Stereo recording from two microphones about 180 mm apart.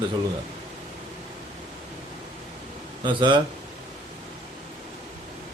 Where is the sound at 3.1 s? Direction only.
25° right (ahead or behind).